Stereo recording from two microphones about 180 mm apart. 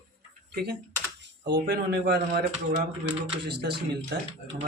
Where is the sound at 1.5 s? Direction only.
65° right (ahead or behind).